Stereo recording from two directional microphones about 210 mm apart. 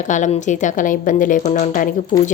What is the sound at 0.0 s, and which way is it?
A woman's voice, 35° left (ahead or behind).